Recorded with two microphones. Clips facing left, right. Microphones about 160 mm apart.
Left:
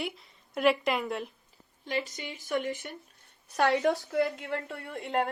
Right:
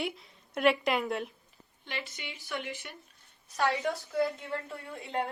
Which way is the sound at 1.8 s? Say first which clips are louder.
Left 7 dB; 40° left (ahead or behind).